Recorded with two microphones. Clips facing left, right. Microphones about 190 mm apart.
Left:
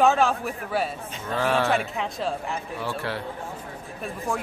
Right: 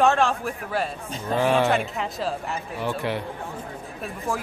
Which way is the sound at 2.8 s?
15° right (ahead or behind).